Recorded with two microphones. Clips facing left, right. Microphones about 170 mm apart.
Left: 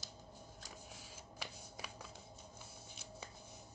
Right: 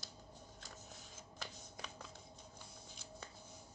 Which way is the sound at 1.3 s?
10° left (ahead or behind).